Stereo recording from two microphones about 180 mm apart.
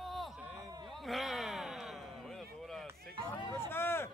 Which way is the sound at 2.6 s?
Centre (ahead or behind).